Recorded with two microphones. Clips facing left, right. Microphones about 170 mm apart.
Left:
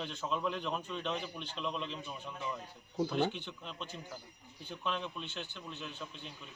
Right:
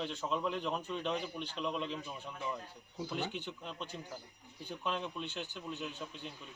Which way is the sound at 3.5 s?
5° right (ahead or behind).